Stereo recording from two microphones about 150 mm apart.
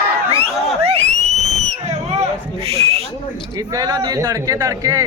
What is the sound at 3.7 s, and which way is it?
Speech, 25° right (ahead or behind).